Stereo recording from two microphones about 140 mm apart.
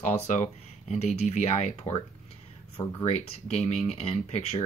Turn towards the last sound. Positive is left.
turn(degrees=50)  # may be behind; listen again after turning